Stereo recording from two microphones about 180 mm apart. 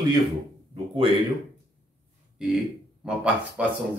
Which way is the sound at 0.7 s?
30° right (ahead or behind).